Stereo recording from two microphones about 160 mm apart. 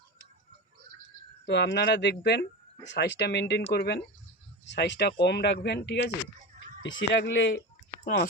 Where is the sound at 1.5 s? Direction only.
90° left.